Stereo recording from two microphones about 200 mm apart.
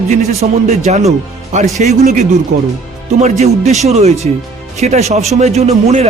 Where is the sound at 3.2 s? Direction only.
35° right (ahead or behind).